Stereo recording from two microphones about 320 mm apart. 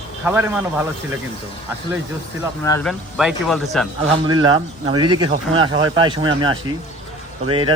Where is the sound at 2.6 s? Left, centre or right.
Centre.